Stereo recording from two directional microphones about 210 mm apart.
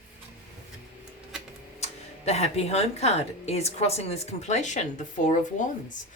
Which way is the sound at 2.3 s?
30° left (ahead or behind).